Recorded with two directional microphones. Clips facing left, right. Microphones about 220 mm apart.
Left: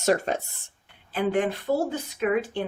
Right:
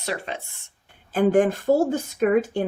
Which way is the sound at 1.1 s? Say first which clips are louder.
Right 6 dB; 45° right (ahead or behind).